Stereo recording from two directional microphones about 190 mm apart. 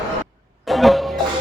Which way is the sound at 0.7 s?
Centre (ahead or behind).